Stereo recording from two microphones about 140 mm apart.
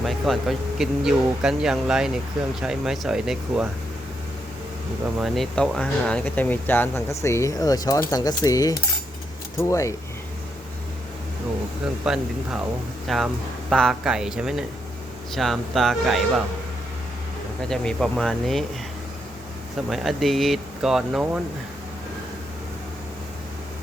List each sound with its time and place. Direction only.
0.0 s speech: centre (ahead or behind)
5.2 s speech: centre (ahead or behind); by 9.9 s 20° left (ahead or behind)
12.0 s speech: 5° right (ahead or behind)
17.7 s speech: 5° left (ahead or behind)
19.9 s speech: centre (ahead or behind)